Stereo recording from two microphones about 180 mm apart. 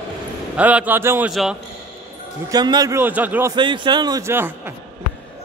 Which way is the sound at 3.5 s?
25° right (ahead or behind).